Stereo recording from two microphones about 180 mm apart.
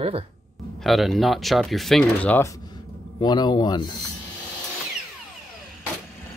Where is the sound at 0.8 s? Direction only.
Centre (ahead or behind); by 3.9 s 25° left (ahead or behind).